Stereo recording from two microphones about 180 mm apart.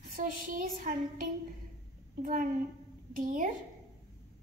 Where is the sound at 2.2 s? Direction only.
50° right (ahead or behind).